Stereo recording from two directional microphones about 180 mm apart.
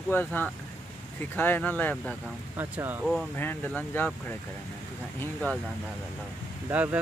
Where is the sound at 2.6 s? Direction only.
10° right (ahead or behind).